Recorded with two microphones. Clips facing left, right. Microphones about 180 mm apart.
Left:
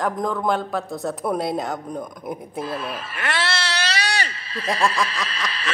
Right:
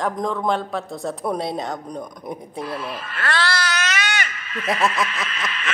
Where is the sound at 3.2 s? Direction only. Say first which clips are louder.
Right 2 dB; 25° left (ahead or behind).